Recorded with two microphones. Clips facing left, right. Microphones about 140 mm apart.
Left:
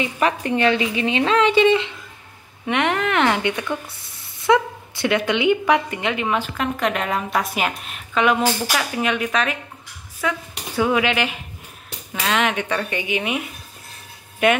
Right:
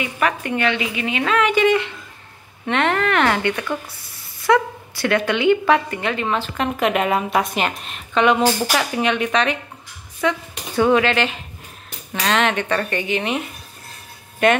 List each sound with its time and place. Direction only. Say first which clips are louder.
0.0 s a woman's voice: left 1 dB; 30° left (ahead or behind); by 6.5 s 10° left (ahead or behind)
6.5 s speech: right 3 dB; 5° right (ahead or behind)
14.4 s speech: right 1 dB; 10° left (ahead or behind)